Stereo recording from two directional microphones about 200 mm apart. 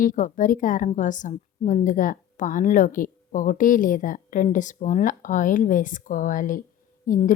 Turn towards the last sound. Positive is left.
turn(degrees=40)  # may be behind; listen again after turning